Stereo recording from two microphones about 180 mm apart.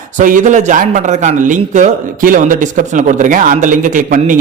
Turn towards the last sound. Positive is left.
turn(degrees=-45)  # may be behind; listen again after turning